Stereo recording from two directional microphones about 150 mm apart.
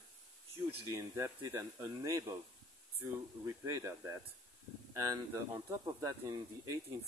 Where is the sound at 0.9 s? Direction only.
20° right (ahead or behind).